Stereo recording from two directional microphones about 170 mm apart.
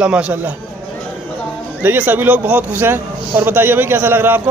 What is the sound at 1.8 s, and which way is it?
A man's voice, 10° right (ahead or behind).